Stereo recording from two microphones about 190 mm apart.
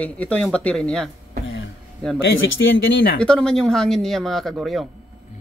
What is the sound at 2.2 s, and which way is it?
Speech, 80° left.